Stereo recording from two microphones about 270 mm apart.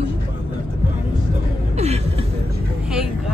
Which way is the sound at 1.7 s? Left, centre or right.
Right.